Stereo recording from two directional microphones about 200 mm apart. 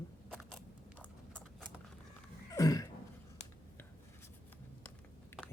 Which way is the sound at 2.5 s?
15° left (ahead or behind).